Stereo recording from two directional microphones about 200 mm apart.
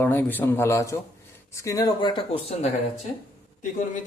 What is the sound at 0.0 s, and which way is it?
A man's voice, 10° left (ahead or behind).